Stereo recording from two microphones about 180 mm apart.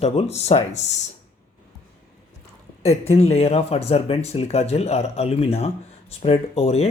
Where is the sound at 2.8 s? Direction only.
35° left (ahead or behind).